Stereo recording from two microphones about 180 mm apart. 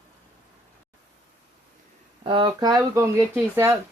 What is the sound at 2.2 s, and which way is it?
Speech, 25° right (ahead or behind).